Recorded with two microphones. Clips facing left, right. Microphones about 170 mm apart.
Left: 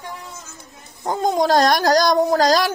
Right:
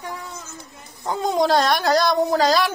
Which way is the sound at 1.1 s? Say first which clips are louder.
Left 2 dB; 45° left (ahead or behind).